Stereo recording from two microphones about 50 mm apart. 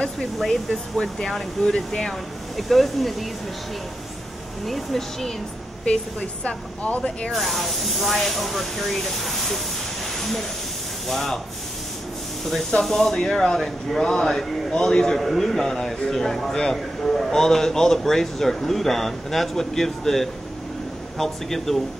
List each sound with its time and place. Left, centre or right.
0.4 s a man's voice: centre
4.6 s speech: centre
6.4 s speech: left
7.0 s a man's voice: centre
7.3 s speech: centre
10.1 s a sound: centre
11.1 s speech: centre
12.8 s a man's voice: centre